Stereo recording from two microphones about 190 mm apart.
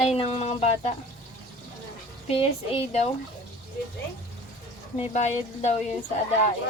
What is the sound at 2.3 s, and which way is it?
Speech, 30° left (ahead or behind).